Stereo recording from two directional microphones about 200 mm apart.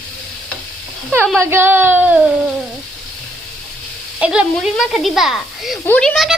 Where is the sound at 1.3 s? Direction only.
10° right (ahead or behind).